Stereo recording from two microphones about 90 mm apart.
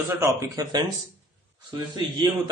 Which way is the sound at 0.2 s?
35° right (ahead or behind).